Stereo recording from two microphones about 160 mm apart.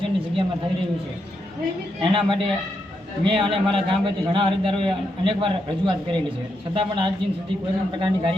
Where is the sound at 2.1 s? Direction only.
35° right (ahead or behind).